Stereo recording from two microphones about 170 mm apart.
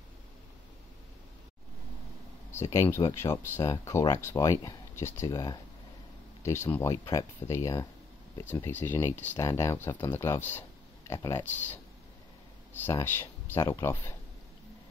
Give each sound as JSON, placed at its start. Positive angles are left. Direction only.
{"t": 2.5, "sound": "speech", "side_deg": 15}